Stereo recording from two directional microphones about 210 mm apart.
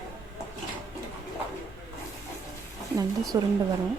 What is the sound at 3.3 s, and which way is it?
Speech, 15° right (ahead or behind).